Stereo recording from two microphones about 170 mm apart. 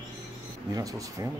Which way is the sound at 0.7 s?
20° right (ahead or behind).